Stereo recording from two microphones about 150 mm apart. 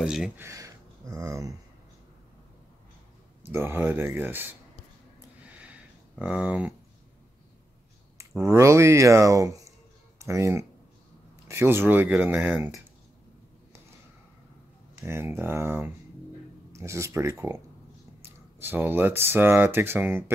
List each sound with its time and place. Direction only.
0.0 s speech: 5° right (ahead or behind)
0.4 s speech: 20° right (ahead or behind)
3.5 s speech: 15° right (ahead or behind)
5.4 s a sound: 10° right (ahead or behind)
8.4 s speech: 20° right (ahead or behind)
15.0 s speech: 15° right (ahead or behind)